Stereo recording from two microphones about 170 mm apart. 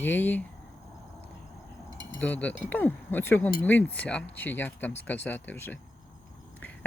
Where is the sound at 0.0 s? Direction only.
10° left (ahead or behind).